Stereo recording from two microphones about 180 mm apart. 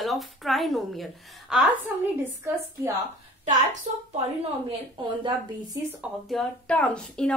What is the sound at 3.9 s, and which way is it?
Speech, 45° right (ahead or behind).